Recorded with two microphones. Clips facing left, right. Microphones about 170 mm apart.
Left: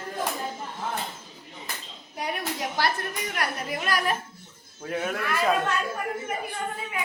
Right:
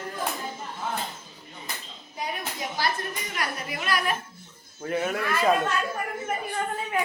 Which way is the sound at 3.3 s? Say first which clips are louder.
Left 2 dB; 45° left (ahead or behind).